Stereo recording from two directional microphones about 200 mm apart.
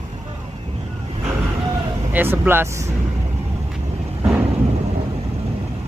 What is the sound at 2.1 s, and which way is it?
Speech, 10° right (ahead or behind).